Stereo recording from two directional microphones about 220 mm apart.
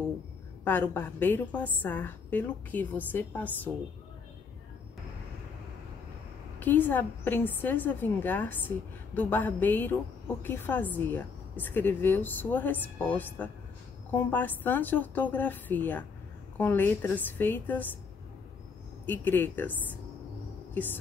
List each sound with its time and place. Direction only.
0.7 s a woman's voice: 10° left (ahead or behind)
6.6 s a woman's voice: 10° left (ahead or behind)
19.0 s a woman's voice: 10° left (ahead or behind)
20.7 s speech: 10° left (ahead or behind)